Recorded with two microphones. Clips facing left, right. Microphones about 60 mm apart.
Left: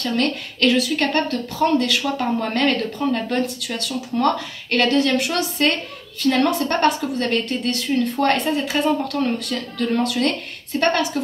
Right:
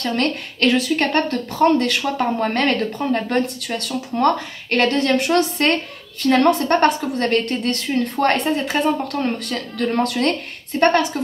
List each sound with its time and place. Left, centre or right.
0.0 s a woman's voice: right
7.9 s a woman's voice: right
10.8 s a woman's voice: right